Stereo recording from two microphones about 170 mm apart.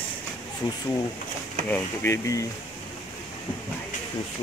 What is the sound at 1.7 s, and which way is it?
Speech, 15° left (ahead or behind).